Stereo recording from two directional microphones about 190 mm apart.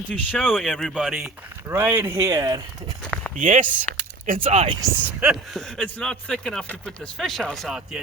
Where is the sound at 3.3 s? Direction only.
40° right (ahead or behind).